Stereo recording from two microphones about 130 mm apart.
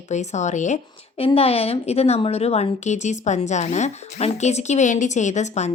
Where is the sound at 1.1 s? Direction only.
50° left (ahead or behind).